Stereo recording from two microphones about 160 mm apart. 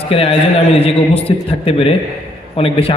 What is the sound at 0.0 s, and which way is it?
A man's voice, 35° left (ahead or behind).